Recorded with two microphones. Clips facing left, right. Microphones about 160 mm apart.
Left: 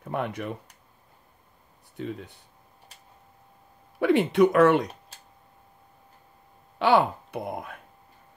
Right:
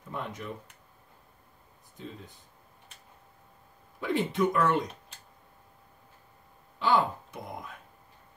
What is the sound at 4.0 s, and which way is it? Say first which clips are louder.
Speech: left 8 dB; 70° left (ahead or behind).